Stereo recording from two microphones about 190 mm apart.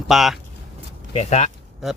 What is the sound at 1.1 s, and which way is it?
Speech, 35° left (ahead or behind).